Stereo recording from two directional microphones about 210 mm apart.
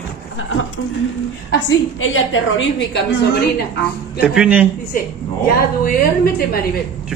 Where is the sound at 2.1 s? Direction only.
65° left (ahead or behind).